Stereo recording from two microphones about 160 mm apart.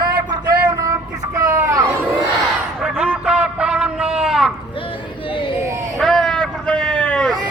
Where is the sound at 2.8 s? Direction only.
10° right (ahead or behind).